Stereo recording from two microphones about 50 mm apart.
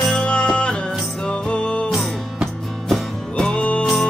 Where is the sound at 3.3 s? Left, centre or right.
Centre.